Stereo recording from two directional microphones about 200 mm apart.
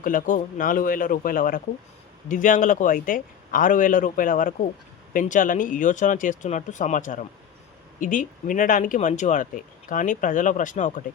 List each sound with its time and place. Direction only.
0.0 s speech: 45° left (ahead or behind)